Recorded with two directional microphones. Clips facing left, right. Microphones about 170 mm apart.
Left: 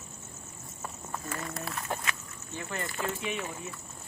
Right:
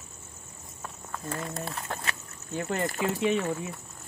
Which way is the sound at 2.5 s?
45° right (ahead or behind).